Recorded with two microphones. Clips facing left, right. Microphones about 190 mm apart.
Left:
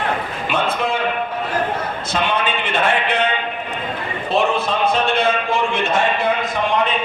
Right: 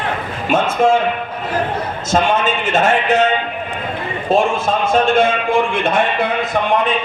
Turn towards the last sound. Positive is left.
turn(degrees=-55)  # may be behind; listen again after turning